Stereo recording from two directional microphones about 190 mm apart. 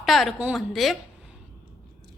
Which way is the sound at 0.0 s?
Centre (ahead or behind).